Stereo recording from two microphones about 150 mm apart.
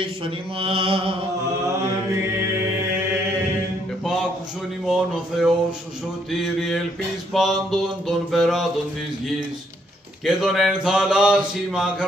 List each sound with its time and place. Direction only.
0.0 s mantra: 35° right (ahead or behind)
4.8 s speech: 5° right (ahead or behind)
10.2 s speech: centre (ahead or behind)